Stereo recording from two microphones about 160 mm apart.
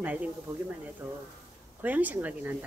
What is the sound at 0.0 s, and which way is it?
Speech, 10° right (ahead or behind).